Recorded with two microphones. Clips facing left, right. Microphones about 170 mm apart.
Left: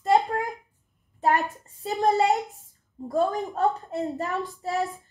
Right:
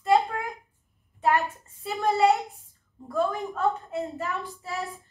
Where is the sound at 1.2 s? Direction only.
40° left (ahead or behind).